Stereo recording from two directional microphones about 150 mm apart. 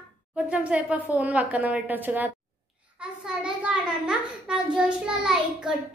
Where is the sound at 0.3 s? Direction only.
5° right (ahead or behind).